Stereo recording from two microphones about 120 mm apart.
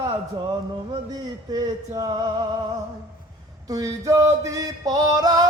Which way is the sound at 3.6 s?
30° right (ahead or behind).